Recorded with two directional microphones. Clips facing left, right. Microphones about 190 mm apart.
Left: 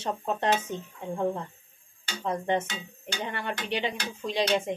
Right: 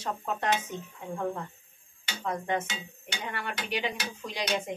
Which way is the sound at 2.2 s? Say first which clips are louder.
Left 3 dB; 30° left (ahead or behind).